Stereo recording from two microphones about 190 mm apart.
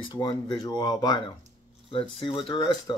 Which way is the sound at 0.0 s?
25° left (ahead or behind).